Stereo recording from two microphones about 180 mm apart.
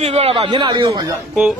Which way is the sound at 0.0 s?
35° right (ahead or behind).